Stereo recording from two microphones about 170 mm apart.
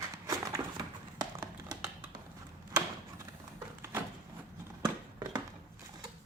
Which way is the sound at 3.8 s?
15° right (ahead or behind).